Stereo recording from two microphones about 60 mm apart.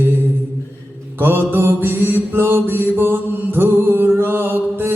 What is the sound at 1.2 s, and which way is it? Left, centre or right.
Mantra, right.